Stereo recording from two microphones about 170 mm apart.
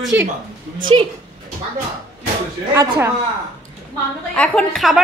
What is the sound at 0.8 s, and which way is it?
Speech, 30° right (ahead or behind).